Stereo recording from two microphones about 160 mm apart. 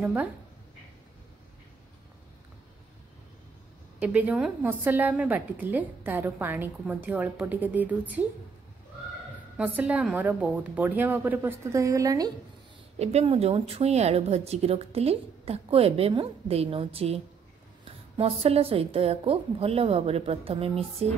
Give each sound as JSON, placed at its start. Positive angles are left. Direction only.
{"t": 0.0, "sound": "a woman's voice", "side_deg": -15}
{"t": 4.0, "sound": "a woman's voice", "side_deg": -10}
{"t": 9.6, "sound": "a woman's voice", "side_deg": -10}
{"t": 13.0, "sound": "a woman's voice", "side_deg": -40}